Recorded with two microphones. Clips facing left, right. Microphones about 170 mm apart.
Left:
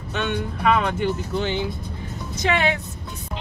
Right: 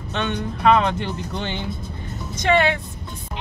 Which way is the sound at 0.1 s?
5° left (ahead or behind).